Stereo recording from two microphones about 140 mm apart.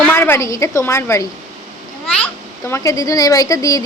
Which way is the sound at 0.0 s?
15° left (ahead or behind).